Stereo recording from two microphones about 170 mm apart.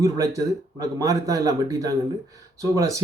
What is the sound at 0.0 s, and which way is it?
A man's voice, 20° right (ahead or behind).